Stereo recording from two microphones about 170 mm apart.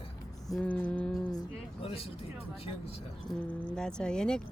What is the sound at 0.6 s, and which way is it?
Music, 10° left (ahead or behind).